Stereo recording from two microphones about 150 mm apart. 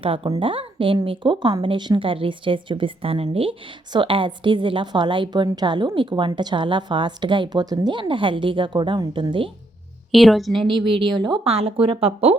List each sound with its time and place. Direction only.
0.0 s a woman's voice: 35° right (ahead or behind)
10.1 s a woman's voice: centre (ahead or behind)
10.7 s a woman's voice: 35° right (ahead or behind)